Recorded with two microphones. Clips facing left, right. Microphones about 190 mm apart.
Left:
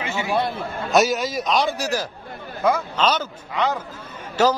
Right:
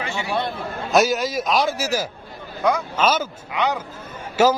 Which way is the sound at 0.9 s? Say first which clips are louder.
Right 1 dB; centre (ahead or behind).